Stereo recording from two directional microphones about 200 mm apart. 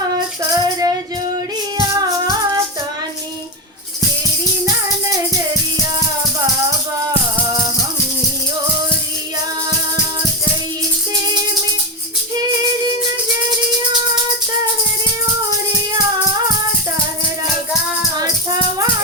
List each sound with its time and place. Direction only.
0.5 s music: 20° right (ahead or behind)
2.0 s music: 20° right (ahead or behind)